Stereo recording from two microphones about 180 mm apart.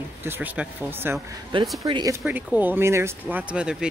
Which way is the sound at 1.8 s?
20° right (ahead or behind).